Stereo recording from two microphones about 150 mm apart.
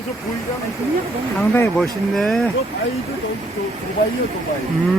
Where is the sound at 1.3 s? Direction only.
15° left (ahead or behind).